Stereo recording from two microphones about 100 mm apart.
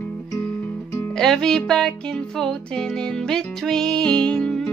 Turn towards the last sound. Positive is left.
turn(degrees=10)  # may be behind; listen again after turning